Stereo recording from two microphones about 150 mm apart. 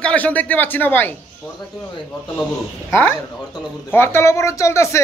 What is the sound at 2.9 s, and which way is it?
A man's voice, 15° left (ahead or behind).